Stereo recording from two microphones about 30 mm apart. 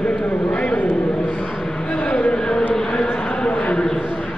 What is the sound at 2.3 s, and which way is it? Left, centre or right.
Speech, left.